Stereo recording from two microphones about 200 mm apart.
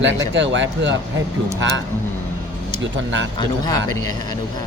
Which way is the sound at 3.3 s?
20° left (ahead or behind).